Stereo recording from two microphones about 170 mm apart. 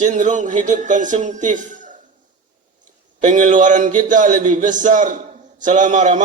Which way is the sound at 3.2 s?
50° right (ahead or behind).